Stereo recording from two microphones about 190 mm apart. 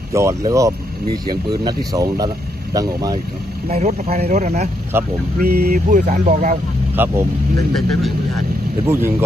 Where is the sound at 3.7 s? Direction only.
35° right (ahead or behind).